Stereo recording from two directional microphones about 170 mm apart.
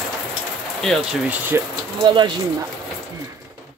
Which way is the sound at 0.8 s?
Centre (ahead or behind).